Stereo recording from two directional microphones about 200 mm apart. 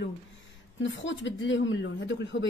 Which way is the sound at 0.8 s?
65° left (ahead or behind).